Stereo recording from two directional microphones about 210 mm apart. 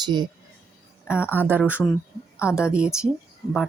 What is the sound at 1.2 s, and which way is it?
Speech, 10° left (ahead or behind).